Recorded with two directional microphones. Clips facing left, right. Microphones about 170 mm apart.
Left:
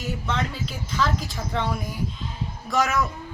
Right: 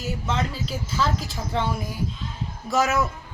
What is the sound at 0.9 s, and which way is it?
Speech, centre (ahead or behind).